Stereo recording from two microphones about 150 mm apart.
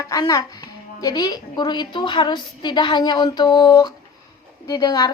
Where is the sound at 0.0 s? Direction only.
25° left (ahead or behind).